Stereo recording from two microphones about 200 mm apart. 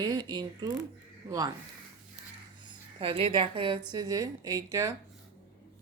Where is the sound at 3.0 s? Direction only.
25° right (ahead or behind).